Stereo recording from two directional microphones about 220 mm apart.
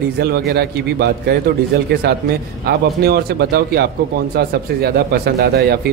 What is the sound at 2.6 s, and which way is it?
Speech, 45° right (ahead or behind).